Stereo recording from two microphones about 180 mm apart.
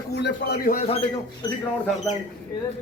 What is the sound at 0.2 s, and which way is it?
Speech, 65° left (ahead or behind).